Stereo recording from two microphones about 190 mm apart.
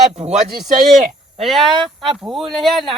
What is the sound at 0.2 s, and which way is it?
Speech, 35° right (ahead or behind).